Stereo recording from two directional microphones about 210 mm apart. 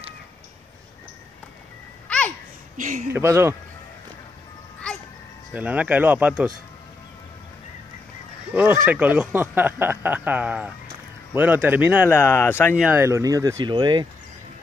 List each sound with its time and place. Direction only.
2.0 s babbling: 5° left (ahead or behind)
2.8 s speech: 35° right (ahead or behind)
3.1 s speech: 10° right (ahead or behind)
5.5 s speech: 5° right (ahead or behind)
8.8 s speech: 5° right (ahead or behind)
12.1 s speech: 10° left (ahead or behind)
12.7 s speech: 10° right (ahead or behind)